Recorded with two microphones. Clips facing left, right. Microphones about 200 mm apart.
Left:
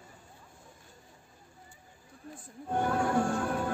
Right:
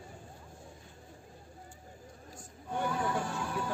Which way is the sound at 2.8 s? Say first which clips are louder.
Left 5 dB; 55° left (ahead or behind).